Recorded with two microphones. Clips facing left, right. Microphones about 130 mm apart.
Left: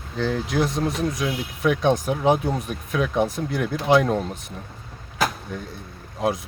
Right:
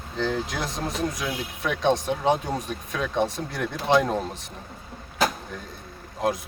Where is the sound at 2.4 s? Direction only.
5° left (ahead or behind).